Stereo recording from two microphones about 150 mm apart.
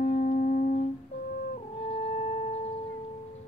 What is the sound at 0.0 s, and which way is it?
Music, 60° left (ahead or behind).